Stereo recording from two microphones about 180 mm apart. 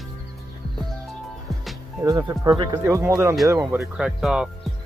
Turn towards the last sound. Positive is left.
turn(degrees=-5)  # may be behind; listen again after turning